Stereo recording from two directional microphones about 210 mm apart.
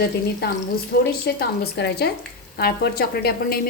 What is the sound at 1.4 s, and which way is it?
A woman's voice, 50° left (ahead or behind).